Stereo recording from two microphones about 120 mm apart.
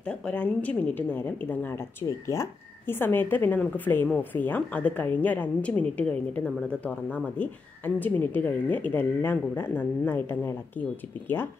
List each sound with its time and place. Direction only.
0.3 s a woman's voice: 10° left (ahead or behind)
2.0 s a woman's voice: 25° left (ahead or behind)